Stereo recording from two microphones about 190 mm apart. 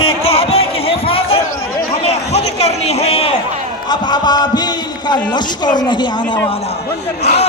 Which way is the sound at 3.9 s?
20° left (ahead or behind).